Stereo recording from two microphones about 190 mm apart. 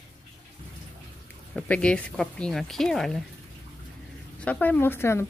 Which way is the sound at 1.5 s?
5° left (ahead or behind).